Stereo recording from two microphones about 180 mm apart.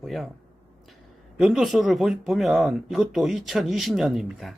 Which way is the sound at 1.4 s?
Centre (ahead or behind).